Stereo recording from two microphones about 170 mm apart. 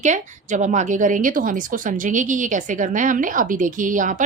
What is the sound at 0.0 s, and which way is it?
A woman's voice, 45° right (ahead or behind).